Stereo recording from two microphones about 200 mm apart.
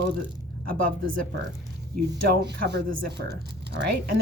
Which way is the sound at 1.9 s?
55° right (ahead or behind).